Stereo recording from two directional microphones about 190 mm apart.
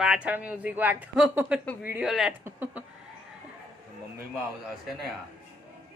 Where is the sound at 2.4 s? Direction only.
10° right (ahead or behind).